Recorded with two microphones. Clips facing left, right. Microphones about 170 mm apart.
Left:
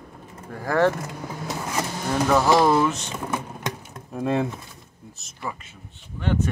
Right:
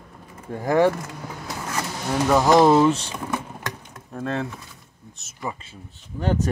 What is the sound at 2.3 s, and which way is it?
Speech, 15° right (ahead or behind).